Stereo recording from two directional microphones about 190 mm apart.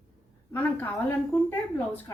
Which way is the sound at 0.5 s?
10° left (ahead or behind).